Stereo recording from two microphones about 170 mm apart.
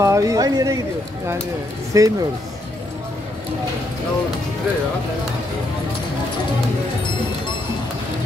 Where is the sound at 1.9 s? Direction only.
20° right (ahead or behind).